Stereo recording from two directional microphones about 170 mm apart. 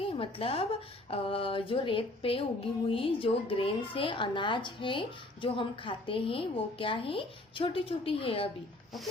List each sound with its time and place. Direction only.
0.0 s a woman's voice: 35° left (ahead or behind)